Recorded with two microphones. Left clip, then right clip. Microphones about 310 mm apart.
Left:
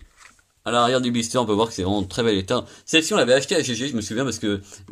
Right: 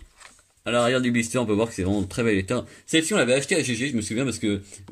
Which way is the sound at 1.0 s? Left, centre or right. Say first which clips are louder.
Left 2 dB; centre.